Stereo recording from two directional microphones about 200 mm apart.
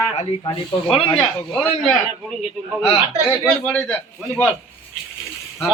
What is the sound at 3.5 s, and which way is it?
Speech, 5° left (ahead or behind).